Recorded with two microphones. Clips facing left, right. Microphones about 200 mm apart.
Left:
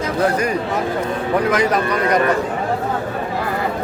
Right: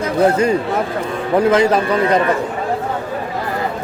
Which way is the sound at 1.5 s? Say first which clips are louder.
Right 6 dB; 25° right (ahead or behind).